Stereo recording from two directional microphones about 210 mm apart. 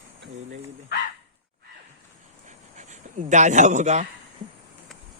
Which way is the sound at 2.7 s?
35° right (ahead or behind).